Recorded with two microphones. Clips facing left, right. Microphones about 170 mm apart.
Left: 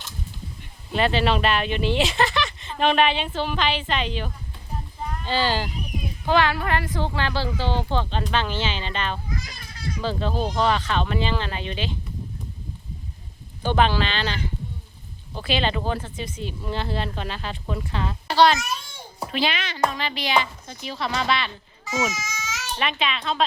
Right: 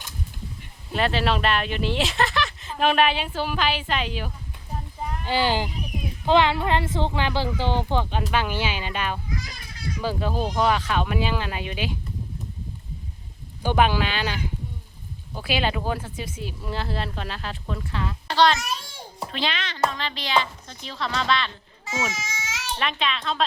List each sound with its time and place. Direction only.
0.9 s a woman's voice: centre (ahead or behind)
13.6 s a woman's voice: 10° right (ahead or behind)
17.9 s a woman's voice: 25° left (ahead or behind)
18.3 s a child's voice: 5° left (ahead or behind)
21.8 s baby cry: 30° right (ahead or behind)
22.8 s speech: 5° left (ahead or behind)